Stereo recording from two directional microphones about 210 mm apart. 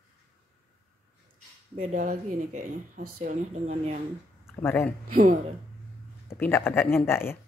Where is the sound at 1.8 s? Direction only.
35° right (ahead or behind).